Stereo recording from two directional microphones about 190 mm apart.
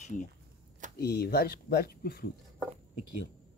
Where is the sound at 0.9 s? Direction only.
55° left (ahead or behind).